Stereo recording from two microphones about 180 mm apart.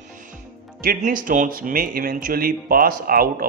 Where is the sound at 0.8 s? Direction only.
50° right (ahead or behind).